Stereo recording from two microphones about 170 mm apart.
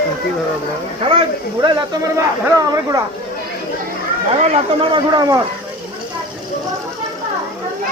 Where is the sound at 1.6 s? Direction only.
25° right (ahead or behind).